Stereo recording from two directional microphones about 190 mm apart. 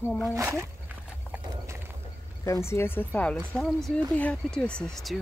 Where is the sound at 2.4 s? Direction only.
15° left (ahead or behind).